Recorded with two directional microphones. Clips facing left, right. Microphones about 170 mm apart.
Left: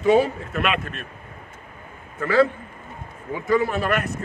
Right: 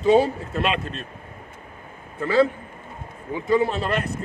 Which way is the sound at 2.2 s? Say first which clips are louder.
Even; 20° right (ahead or behind).